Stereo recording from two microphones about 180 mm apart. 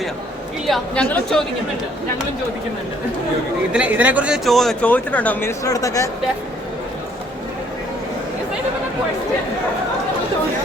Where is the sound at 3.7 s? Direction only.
5° right (ahead or behind); by 5.5 s 10° left (ahead or behind).